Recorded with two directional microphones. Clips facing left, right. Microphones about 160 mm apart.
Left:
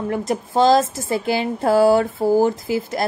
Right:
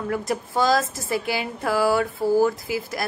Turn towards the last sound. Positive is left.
turn(degrees=25)  # may be behind; listen again after turning